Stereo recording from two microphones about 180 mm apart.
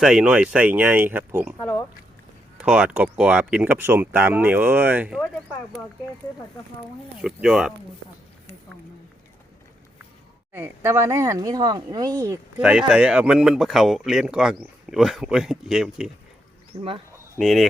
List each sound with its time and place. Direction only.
0.0 s speech: 5° right (ahead or behind)
1.5 s speech: 10° left (ahead or behind)
2.6 s speech: 5° right (ahead or behind)
7.2 s speech: centre (ahead or behind)
10.5 s speech: 15° right (ahead or behind)
12.2 s speech: 10° right (ahead or behind)
17.4 s speech: centre (ahead or behind)